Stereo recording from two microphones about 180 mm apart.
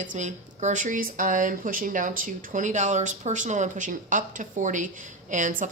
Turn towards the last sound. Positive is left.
turn(degrees=-45)  # may be behind; listen again after turning